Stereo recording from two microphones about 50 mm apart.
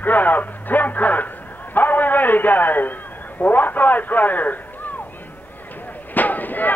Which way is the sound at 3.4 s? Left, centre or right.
Left.